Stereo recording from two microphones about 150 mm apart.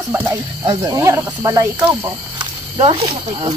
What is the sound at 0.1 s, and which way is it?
Speech, 15° right (ahead or behind).